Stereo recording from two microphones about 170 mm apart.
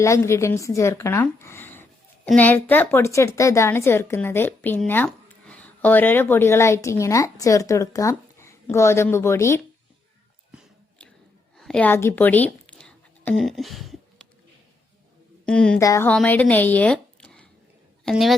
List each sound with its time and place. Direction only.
0.0 s a woman's voice: 15° left (ahead or behind)
11.5 s a woman's voice: 5° left (ahead or behind)
12.6 s a sound: 5° left (ahead or behind)
15.4 s a woman's voice: 5° left (ahead or behind)
15.8 s a sound: 20° left (ahead or behind)
16.0 s a woman's voice: 10° left (ahead or behind)